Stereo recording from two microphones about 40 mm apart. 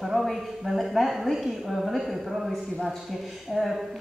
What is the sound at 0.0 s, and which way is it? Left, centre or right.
A woman's voice, centre.